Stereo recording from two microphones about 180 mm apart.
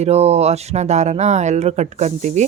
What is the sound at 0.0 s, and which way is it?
Speech, 35° right (ahead or behind).